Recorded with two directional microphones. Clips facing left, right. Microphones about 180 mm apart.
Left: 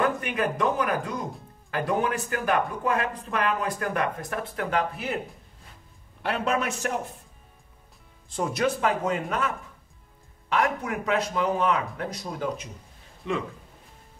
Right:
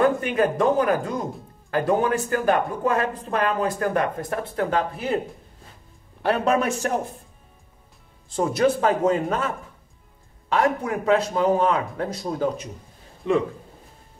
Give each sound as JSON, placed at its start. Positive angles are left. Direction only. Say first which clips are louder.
{"t": 0.2, "sound": "speech", "louder": "right 5 dB", "side_deg": -35}
{"t": 6.2, "sound": "speech", "louder": "right 6 dB", "side_deg": -40}
{"t": 8.4, "sound": "speech", "louder": "right 5 dB", "side_deg": -30}
{"t": 10.5, "sound": "speech", "louder": "right 4 dB", "side_deg": -35}